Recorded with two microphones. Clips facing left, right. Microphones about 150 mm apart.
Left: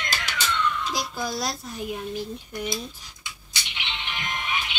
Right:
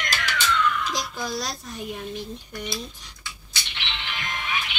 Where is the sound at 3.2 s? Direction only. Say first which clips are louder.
Even; 15° left (ahead or behind).